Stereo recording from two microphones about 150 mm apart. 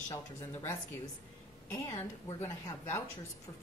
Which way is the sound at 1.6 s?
20° left (ahead or behind).